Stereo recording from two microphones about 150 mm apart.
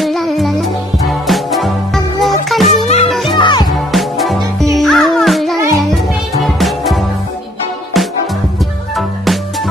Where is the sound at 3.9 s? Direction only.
Centre (ahead or behind).